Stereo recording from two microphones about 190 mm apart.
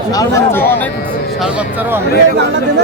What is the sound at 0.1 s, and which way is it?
Speech, 20° left (ahead or behind).